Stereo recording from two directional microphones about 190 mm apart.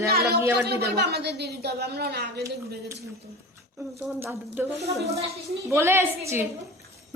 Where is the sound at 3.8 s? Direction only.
15° right (ahead or behind).